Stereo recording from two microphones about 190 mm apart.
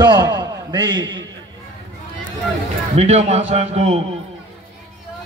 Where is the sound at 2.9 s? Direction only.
35° right (ahead or behind).